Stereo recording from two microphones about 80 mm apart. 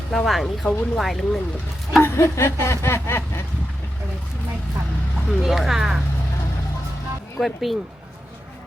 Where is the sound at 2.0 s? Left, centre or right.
Left.